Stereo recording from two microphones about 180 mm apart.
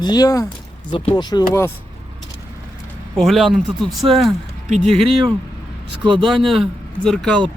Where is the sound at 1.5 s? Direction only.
15° left (ahead or behind).